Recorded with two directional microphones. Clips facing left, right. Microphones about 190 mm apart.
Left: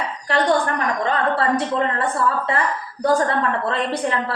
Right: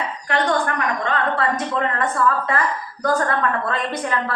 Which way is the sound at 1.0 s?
30° left (ahead or behind).